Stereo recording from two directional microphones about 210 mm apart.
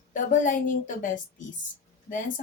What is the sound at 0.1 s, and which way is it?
Speech, 40° left (ahead or behind).